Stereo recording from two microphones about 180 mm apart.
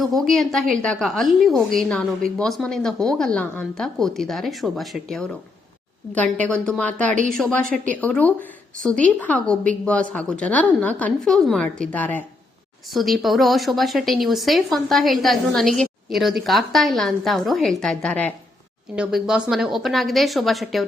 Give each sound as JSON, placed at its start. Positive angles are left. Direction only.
{"t": 0.0, "sound": "a woman's voice", "side_deg": 0}
{"t": 18.9, "sound": "speech", "side_deg": -5}